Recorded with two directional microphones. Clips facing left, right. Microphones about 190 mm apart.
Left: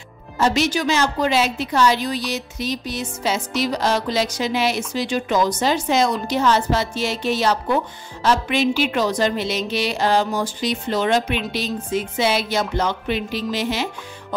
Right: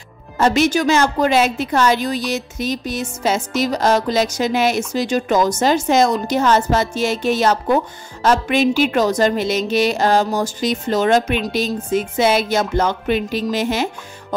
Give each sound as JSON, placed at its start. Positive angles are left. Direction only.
{"t": 0.4, "sound": "a woman's voice", "side_deg": -50}